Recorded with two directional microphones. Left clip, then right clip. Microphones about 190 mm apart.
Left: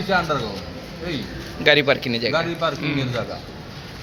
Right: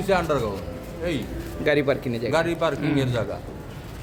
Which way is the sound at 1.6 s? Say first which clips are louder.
Left 5 dB; 5° right (ahead or behind).